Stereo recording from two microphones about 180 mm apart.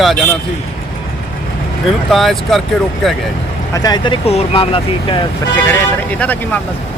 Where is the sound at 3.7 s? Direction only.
20° left (ahead or behind).